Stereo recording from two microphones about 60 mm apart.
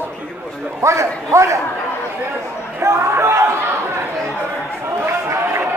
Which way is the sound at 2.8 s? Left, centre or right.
Right.